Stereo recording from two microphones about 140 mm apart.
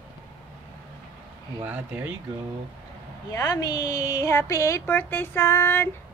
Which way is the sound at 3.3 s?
25° left (ahead or behind).